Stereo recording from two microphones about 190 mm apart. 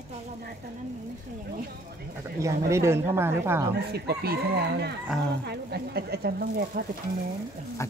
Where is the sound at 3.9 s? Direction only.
55° right (ahead or behind).